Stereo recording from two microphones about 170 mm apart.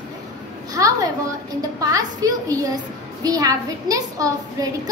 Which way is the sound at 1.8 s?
20° right (ahead or behind).